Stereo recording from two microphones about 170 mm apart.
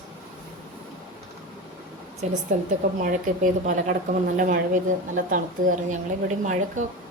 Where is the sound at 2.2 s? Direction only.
45° right (ahead or behind).